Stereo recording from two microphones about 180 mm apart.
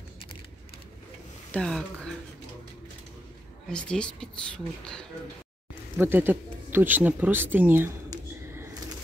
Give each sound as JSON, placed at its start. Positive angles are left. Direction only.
{"t": 1.5, "sound": "speech", "side_deg": 5}
{"t": 3.6, "sound": "speech", "side_deg": 5}
{"t": 5.9, "sound": "speech", "side_deg": -10}